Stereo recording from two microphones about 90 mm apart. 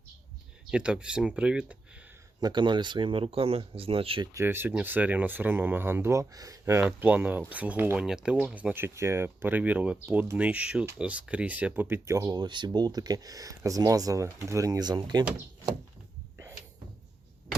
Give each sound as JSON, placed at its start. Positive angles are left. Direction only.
{"t": 0.7, "sound": "speech", "side_deg": -10}
{"t": 2.4, "sound": "speech", "side_deg": -55}
{"t": 4.4, "sound": "speech", "side_deg": -25}
{"t": 6.8, "sound": "speech", "side_deg": -20}
{"t": 8.7, "sound": "speech", "side_deg": -30}
{"t": 12.0, "sound": "speech", "side_deg": -40}
{"t": 14.8, "sound": "speech", "side_deg": -50}